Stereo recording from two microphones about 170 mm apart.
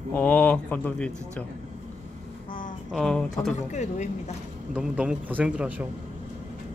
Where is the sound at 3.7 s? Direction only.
45° left (ahead or behind).